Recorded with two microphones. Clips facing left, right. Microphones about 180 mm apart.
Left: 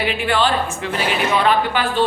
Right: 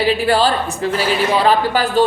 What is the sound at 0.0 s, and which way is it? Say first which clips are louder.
A man's voice: right 4 dB; 35° right (ahead or behind).